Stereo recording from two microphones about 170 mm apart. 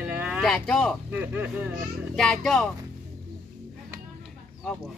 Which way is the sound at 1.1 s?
10° right (ahead or behind).